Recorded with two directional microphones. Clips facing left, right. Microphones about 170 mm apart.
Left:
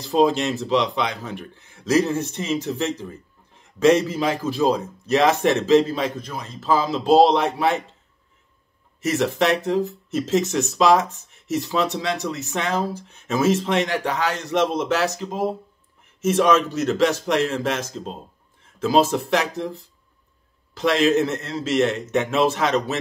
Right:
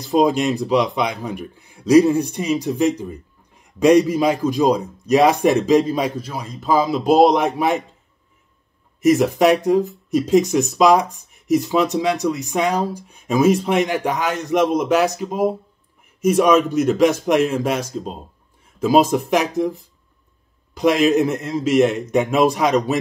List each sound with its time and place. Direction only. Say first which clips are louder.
0.0 s speech: right 2 dB; 15° right (ahead or behind)
9.0 s speech: right 6 dB; 15° right (ahead or behind)